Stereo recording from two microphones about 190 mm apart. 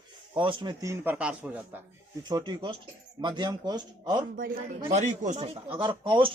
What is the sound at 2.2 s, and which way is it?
Speech, 25° right (ahead or behind).